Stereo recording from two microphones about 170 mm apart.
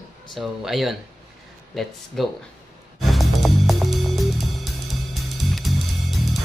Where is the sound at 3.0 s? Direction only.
Centre (ahead or behind).